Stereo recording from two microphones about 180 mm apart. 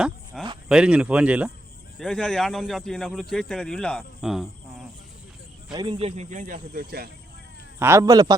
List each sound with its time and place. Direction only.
0.3 s a sound: centre (ahead or behind)
0.7 s speech: 5° right (ahead or behind)
2.0 s speech: 5° left (ahead or behind)
5.7 s speech: 25° right (ahead or behind); by 7.1 s 55° right (ahead or behind)
7.8 s speech: 15° right (ahead or behind)